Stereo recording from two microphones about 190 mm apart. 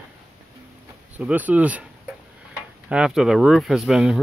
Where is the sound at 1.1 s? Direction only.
10° right (ahead or behind).